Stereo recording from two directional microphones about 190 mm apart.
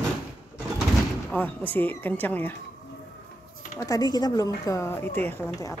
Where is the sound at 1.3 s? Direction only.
10° left (ahead or behind).